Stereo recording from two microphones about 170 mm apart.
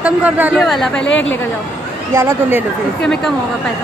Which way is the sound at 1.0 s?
90° left.